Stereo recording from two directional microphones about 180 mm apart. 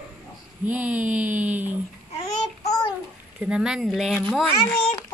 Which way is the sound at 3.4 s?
5° right (ahead or behind).